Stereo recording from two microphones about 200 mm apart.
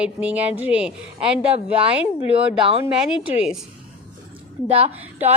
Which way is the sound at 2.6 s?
25° right (ahead or behind).